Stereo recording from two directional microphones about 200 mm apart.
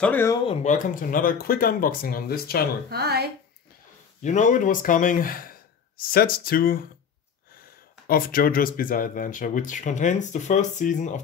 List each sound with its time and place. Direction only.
0.0 s speech: 10° left (ahead or behind)
0.5 s speech: 35° left (ahead or behind)
2.9 s speech: 50° right (ahead or behind)
4.2 s speech: 35° left (ahead or behind)
8.1 s speech: 45° left (ahead or behind)